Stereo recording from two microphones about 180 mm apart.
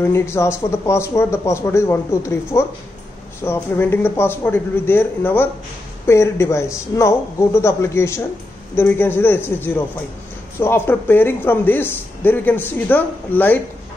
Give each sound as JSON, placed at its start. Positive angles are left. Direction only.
{"t": 0.0, "sound": "speech", "side_deg": 15}